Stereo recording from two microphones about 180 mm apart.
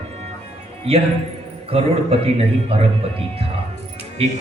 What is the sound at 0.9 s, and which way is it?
A man's voice, 35° right (ahead or behind).